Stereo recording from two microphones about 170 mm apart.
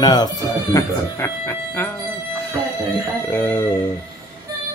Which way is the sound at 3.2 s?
15° left (ahead or behind).